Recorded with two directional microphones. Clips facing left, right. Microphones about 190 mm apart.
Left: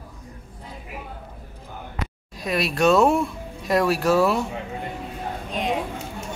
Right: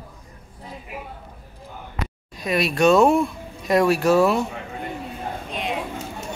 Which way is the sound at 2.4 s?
Centre (ahead or behind).